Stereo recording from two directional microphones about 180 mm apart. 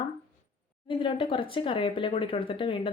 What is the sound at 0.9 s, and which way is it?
Speech, 30° left (ahead or behind).